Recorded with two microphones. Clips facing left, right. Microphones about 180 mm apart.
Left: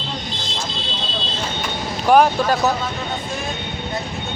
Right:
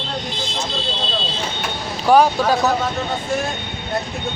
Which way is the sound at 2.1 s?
15° left (ahead or behind).